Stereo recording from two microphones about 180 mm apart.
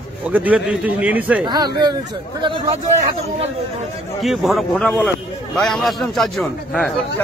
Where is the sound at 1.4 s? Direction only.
25° right (ahead or behind).